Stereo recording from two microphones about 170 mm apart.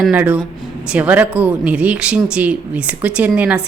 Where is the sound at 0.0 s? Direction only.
5° right (ahead or behind).